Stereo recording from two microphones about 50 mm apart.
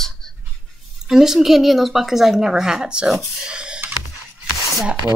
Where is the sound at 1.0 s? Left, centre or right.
Centre.